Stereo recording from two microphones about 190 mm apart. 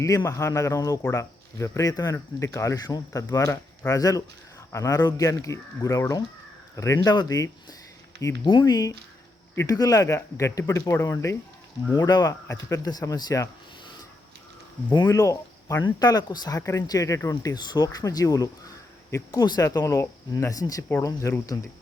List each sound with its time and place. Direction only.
0.0 s speech: 15° left (ahead or behind)
15.0 s speech: 15° left (ahead or behind)